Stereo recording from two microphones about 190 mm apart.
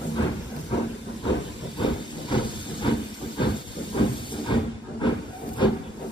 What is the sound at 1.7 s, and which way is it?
Hiss, 25° left (ahead or behind).